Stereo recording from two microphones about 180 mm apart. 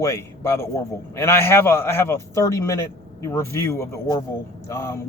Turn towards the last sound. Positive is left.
turn(degrees=15)  # may be behind; listen again after turning